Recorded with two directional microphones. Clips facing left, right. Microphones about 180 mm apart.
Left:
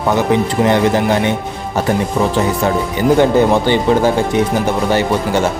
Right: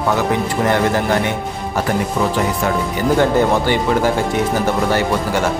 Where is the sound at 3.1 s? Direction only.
20° left (ahead or behind).